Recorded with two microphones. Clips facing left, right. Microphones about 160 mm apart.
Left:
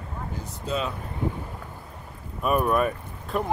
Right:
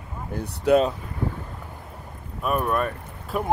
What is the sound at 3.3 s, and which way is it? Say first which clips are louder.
Speech: even; 5° right (ahead or behind).